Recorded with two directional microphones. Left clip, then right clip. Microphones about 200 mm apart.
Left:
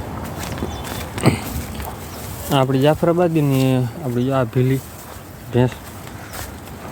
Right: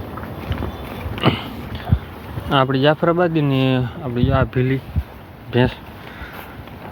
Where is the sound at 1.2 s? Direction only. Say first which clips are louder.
Even; 20° left (ahead or behind).